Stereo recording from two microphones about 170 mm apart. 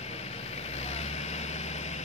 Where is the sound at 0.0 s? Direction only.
40° left (ahead or behind).